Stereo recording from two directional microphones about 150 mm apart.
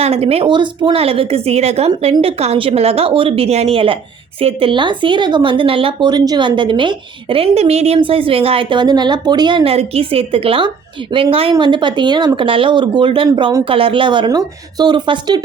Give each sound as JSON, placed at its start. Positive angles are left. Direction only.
{"t": 0.0, "sound": "a woman's voice", "side_deg": -40}